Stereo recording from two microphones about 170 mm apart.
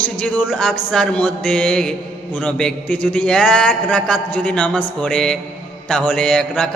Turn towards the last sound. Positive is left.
turn(degrees=5)  # may be behind; listen again after turning